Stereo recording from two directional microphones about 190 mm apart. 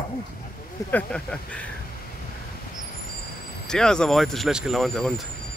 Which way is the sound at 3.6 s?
5° left (ahead or behind).